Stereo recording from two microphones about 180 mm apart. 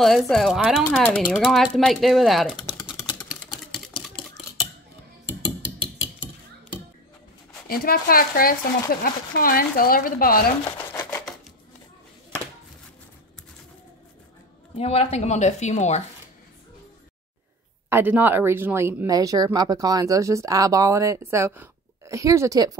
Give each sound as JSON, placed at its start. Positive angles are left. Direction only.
{"t": 0.0, "sound": "speech", "side_deg": 0}
{"t": 2.6, "sound": "typing", "side_deg": 25}
{"t": 7.6, "sound": "speech", "side_deg": 55}
{"t": 10.9, "sound": "a sound", "side_deg": 15}
{"t": 14.8, "sound": "speech", "side_deg": 35}
{"t": 17.8, "sound": "speech", "side_deg": -10}